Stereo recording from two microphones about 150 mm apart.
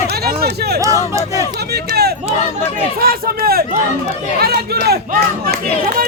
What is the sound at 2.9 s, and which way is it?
Speech, 80° right.